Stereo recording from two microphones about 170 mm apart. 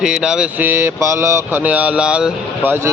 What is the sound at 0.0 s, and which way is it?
Mantra, 5° right (ahead or behind).